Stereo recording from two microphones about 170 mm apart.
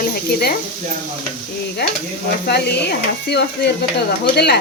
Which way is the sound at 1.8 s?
75° left (ahead or behind).